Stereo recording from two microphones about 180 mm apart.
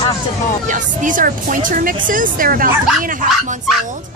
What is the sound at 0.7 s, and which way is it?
Speech, 45° right (ahead or behind).